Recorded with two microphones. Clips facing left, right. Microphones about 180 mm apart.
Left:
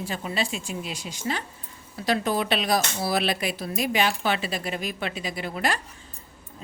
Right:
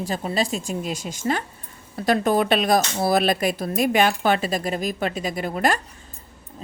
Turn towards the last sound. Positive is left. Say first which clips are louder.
# right 5 dB
turn(degrees=-45)  # may be behind; listen again after turning